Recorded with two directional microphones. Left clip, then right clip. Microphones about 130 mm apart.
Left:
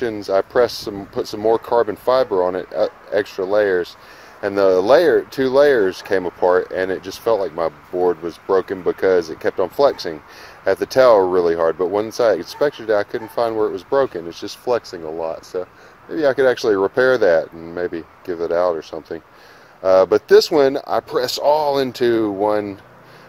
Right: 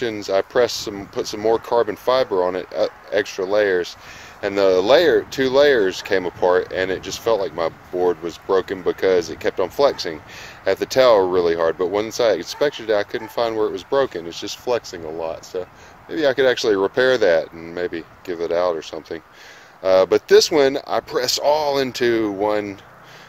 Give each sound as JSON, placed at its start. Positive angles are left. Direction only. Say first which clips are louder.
{"t": 0.0, "sound": "speech", "louder": "left 2 dB", "side_deg": 15}